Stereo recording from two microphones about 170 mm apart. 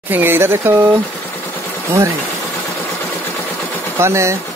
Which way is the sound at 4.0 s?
15° right (ahead or behind).